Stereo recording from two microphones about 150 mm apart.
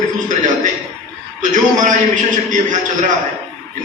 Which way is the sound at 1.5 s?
55° right (ahead or behind).